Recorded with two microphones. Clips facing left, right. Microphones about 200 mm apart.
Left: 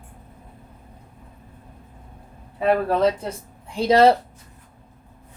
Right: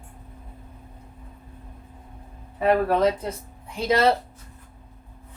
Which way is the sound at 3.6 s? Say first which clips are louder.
Left 5 dB; 30° left (ahead or behind).